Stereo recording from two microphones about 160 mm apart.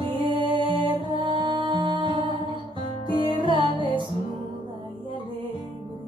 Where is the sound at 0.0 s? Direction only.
30° right (ahead or behind).